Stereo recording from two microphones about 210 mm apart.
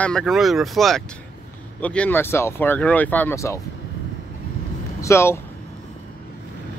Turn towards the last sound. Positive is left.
turn(degrees=10)  # may be behind; listen again after turning